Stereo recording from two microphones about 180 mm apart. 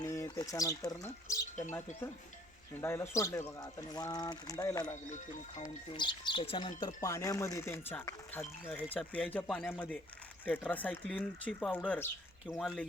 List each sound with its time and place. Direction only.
0.0 s bird: 15° left (ahead or behind)
0.3 s speech: 20° left (ahead or behind)
2.8 s speech: 15° left (ahead or behind)
5.0 s speech: 45° left (ahead or behind)
5.9 s speech: 25° left (ahead or behind); by 12.1 s 10° left (ahead or behind)
12.5 s speech: centre (ahead or behind)